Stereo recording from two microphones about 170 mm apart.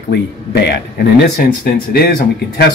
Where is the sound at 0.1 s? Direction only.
80° left.